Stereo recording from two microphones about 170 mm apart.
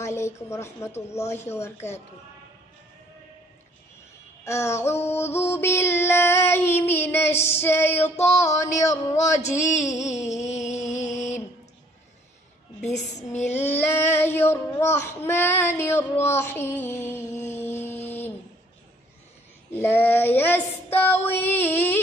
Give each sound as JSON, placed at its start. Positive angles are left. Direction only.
{"t": 0.0, "sound": "child singing", "side_deg": 15}
{"t": 4.5, "sound": "child singing", "side_deg": 15}
{"t": 9.4, "sound": "a sound", "side_deg": 45}
{"t": 9.9, "sound": "music", "side_deg": 40}
{"t": 13.3, "sound": "child singing", "side_deg": 40}
{"t": 13.7, "sound": "child singing", "side_deg": 15}
{"t": 17.6, "sound": "a sound", "side_deg": 10}
{"t": 19.7, "sound": "child singing", "side_deg": 15}